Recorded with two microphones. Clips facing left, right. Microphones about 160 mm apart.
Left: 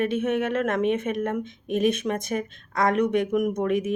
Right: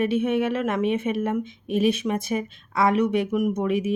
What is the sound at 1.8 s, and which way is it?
Speech, 50° left (ahead or behind).